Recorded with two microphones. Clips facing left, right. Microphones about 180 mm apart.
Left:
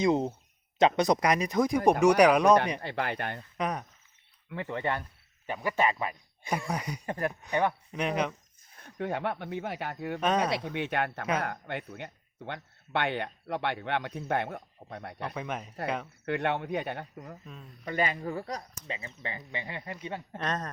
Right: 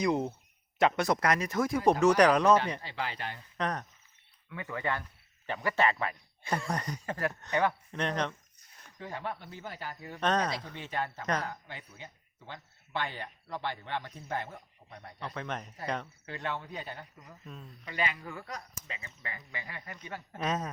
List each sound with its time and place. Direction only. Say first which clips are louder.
0.0 s speech: left 3 dB; 25° left (ahead or behind)
2.8 s speech: left 5 dB; 55° left (ahead or behind)
3.6 s speech: left 1 dB; 10° left (ahead or behind)
4.5 s speech: left 3 dB; 30° left (ahead or behind)
5.5 s speech: left 1 dB; 10° left (ahead or behind)
9.0 s speech: left 7 dB; 65° left (ahead or behind)
10.2 s speech: left 2 dB; 10° left (ahead or behind)
10.8 s speech: left 5 dB; 70° left (ahead or behind)
15.4 s speech: left 1 dB; 10° left (ahead or behind)
16.2 s speech: left 8 dB; 65° left (ahead or behind)
17.4 s speech: even; centre (ahead or behind)
17.8 s speech: left 5 dB; 45° left (ahead or behind); by 20.0 s 25° left (ahead or behind)
20.4 s speech: right 1 dB; 5° right (ahead or behind)